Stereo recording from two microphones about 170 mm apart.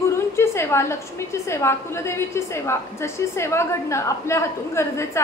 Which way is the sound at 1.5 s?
15° left (ahead or behind).